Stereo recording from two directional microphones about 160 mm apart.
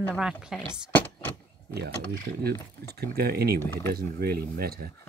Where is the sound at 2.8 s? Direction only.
80° right.